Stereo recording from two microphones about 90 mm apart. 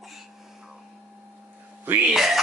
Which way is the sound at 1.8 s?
20° right (ahead or behind).